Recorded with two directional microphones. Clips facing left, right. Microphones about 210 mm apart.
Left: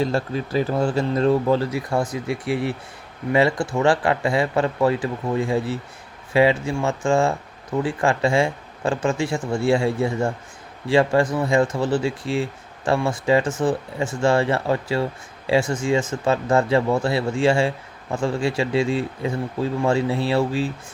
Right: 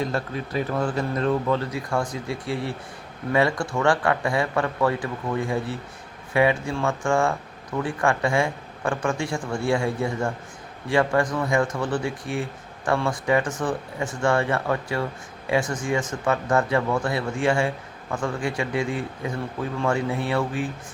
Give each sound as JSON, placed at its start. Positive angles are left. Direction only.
{"t": 0.0, "sound": "speech", "side_deg": 30}